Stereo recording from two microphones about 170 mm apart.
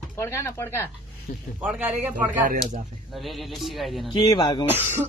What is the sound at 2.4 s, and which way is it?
Speech, 50° right (ahead or behind).